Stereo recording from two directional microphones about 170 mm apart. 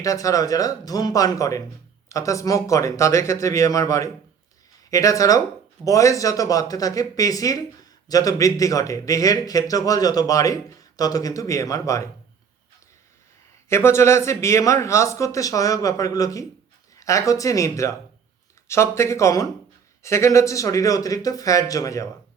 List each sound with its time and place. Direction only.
0.0 s speech: 20° left (ahead or behind)
13.7 s speech: 15° left (ahead or behind)